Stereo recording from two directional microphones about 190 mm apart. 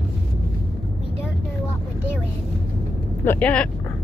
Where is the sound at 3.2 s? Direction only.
5° left (ahead or behind).